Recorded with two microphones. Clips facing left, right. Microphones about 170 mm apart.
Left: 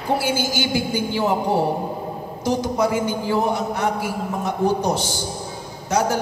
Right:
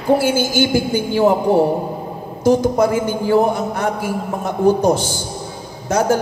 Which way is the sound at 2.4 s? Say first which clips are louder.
Right 6 dB; 50° right (ahead or behind).